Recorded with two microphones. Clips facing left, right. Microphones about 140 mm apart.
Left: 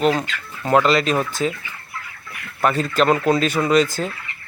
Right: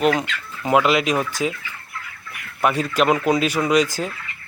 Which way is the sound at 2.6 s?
10° right (ahead or behind).